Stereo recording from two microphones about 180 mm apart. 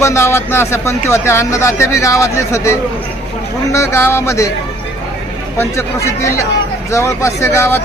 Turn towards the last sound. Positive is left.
turn(degrees=15)  # may be behind; listen again after turning